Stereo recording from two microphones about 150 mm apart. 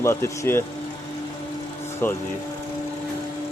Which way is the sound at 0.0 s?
15° left (ahead or behind).